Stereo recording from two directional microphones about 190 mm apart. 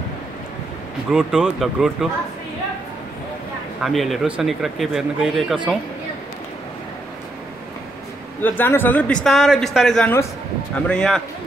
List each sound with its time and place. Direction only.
1.1 s speech: 5° right (ahead or behind)
3.8 s speech: centre (ahead or behind)
8.4 s a man's voice: 10° left (ahead or behind)